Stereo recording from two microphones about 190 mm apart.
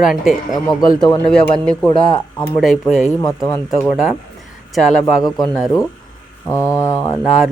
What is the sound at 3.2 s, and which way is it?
Mantra, 15° left (ahead or behind).